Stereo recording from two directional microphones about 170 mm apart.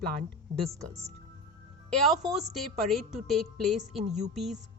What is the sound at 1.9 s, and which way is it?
A woman's voice, centre (ahead or behind).